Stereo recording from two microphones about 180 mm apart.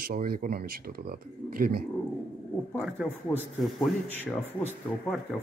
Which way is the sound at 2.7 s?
Centre (ahead or behind).